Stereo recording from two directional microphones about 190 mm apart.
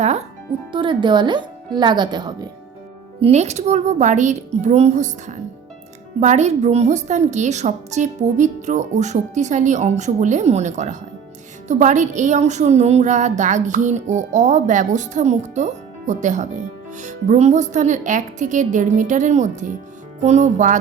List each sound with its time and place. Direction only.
0.7 s speech: 25° right (ahead or behind)
3.2 s a woman's voice: 35° right (ahead or behind)